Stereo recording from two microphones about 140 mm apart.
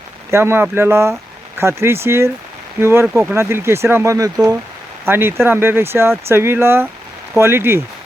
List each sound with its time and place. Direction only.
0.3 s speech: 20° right (ahead or behind)